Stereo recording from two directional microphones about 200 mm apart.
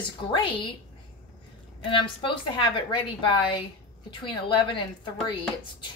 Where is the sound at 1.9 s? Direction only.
25° left (ahead or behind).